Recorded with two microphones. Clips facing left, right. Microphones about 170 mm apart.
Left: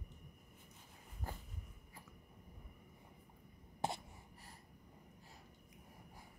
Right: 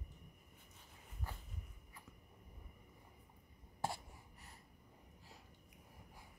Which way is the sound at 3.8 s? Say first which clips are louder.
Left 1 dB; 20° left (ahead or behind).